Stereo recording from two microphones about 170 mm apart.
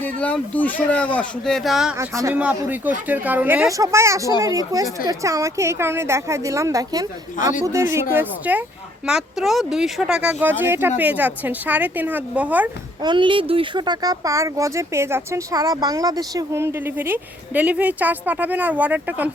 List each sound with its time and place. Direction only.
0.0 s speech: 10° left (ahead or behind)
2.0 s speech: 15° right (ahead or behind)
13.0 s speech: 30° right (ahead or behind); by 19.3 s 10° right (ahead or behind)